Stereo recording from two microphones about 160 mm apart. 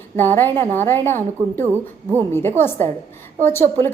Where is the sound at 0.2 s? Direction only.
10° left (ahead or behind).